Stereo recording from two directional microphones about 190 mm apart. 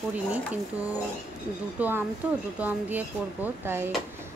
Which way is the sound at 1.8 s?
10° right (ahead or behind).